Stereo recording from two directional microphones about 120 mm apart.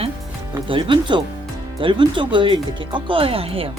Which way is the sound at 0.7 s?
45° right (ahead or behind).